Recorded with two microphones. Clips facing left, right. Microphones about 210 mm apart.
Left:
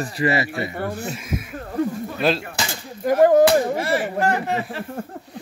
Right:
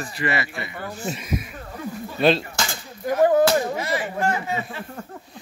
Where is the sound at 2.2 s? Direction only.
Centre (ahead or behind).